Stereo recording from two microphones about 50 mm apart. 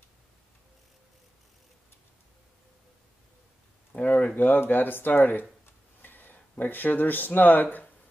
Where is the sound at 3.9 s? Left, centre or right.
Left.